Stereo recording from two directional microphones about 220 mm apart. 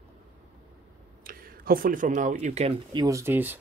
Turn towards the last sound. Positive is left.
turn(degrees=-10)  # may be behind; listen again after turning